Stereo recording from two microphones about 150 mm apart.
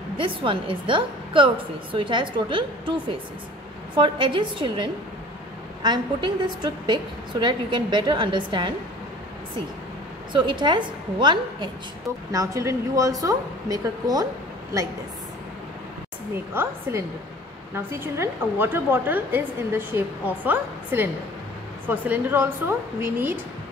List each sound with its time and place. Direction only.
0.2 s a woman's voice: 35° right (ahead or behind)
10.3 s a woman's voice: 30° right (ahead or behind)
17.7 s a woman's voice: 15° right (ahead or behind)